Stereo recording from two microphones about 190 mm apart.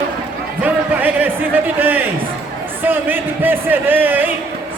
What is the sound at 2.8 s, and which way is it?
Speech, 10° right (ahead or behind).